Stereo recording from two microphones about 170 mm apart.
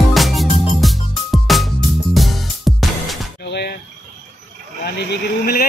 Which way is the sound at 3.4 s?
75° left (ahead or behind).